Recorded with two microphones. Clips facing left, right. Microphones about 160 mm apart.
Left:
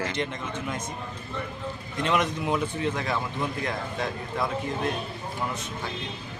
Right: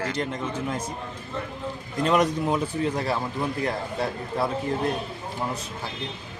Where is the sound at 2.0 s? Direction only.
35° right (ahead or behind).